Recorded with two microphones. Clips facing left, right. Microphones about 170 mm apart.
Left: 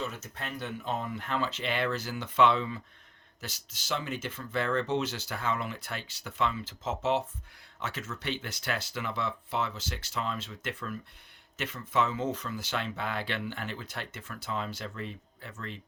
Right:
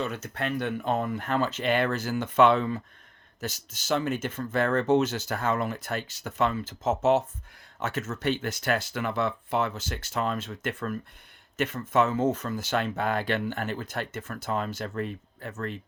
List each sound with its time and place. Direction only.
0.0 s speech: 65° right (ahead or behind); by 15.8 s 50° right (ahead or behind)